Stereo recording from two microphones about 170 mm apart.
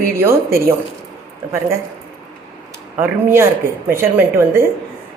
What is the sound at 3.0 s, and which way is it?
A woman's voice, 15° right (ahead or behind).